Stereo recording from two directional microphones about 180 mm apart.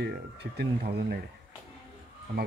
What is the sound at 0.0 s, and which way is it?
Speech, 65° right (ahead or behind).